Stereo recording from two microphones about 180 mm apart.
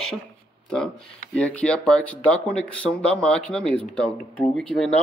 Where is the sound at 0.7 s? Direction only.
5° left (ahead or behind).